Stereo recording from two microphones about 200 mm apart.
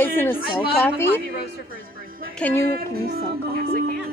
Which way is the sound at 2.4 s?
10° left (ahead or behind).